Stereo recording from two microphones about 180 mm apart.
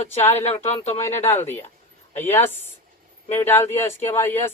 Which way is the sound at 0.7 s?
35° left (ahead or behind).